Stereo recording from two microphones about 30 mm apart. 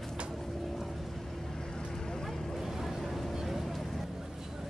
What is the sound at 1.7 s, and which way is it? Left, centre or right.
Vehicle, left.